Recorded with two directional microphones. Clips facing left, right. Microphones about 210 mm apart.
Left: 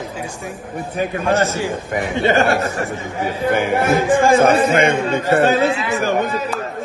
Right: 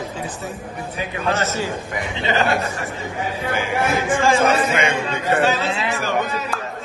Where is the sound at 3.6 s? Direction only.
55° left (ahead or behind).